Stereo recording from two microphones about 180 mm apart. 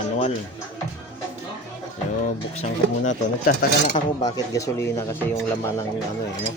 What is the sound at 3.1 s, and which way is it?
Speech, 45° left (ahead or behind).